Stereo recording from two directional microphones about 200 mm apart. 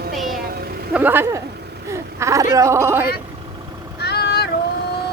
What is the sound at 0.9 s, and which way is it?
Speech, 10° right (ahead or behind).